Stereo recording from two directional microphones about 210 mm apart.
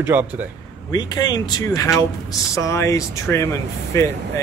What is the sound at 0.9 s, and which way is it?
Speech, 20° left (ahead or behind).